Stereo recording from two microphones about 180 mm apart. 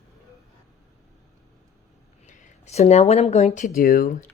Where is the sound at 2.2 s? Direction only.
40° left (ahead or behind).